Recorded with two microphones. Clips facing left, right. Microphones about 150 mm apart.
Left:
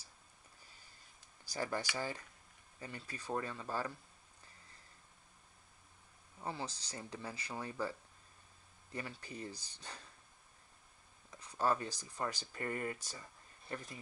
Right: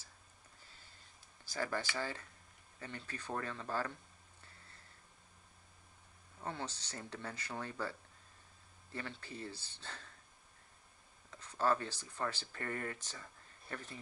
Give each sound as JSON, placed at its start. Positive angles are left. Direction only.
{"t": 1.5, "sound": "speech", "side_deg": 15}
{"t": 6.4, "sound": "speech", "side_deg": 10}
{"t": 11.2, "sound": "speech", "side_deg": 10}